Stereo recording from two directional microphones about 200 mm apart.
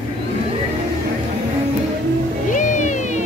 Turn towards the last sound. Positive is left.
turn(degrees=35)  # may be behind; listen again after turning